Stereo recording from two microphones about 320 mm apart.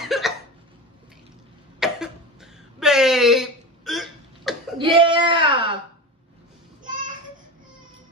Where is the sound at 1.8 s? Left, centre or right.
Centre.